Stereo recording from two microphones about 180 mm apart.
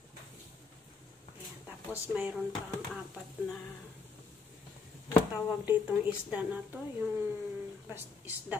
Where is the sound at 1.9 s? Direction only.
5° right (ahead or behind).